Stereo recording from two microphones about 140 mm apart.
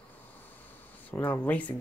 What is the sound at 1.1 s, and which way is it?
Speech, 15° left (ahead or behind).